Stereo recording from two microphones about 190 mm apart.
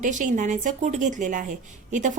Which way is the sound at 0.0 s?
40° right (ahead or behind).